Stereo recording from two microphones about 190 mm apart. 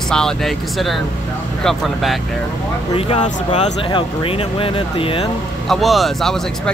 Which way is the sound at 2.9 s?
30° left (ahead or behind).